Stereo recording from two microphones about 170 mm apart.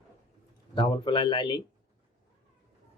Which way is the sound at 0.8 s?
30° left (ahead or behind).